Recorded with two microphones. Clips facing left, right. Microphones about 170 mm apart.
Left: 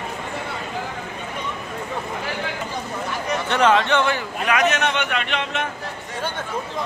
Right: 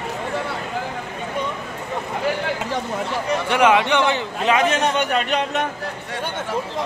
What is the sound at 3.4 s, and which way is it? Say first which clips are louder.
A man's voice: right 1 dB; 10° right (ahead or behind).